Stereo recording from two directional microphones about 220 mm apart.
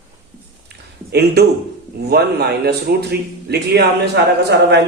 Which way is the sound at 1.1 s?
50° right (ahead or behind).